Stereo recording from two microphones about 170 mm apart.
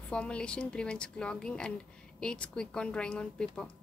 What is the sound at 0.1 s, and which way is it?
A woman's voice, 5° left (ahead or behind).